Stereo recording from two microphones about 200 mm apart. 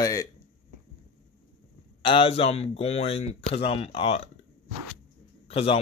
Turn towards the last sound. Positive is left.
turn(degrees=30)  # may be behind; listen again after turning